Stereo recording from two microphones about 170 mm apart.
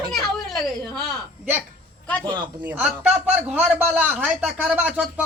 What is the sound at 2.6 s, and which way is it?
A man's voice, 5° right (ahead or behind).